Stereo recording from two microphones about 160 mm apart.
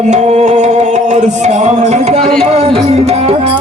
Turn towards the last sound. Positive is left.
turn(degrees=-35)  # may be behind; listen again after turning